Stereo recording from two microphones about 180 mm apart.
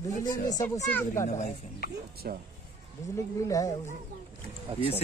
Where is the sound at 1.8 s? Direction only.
60° left (ahead or behind).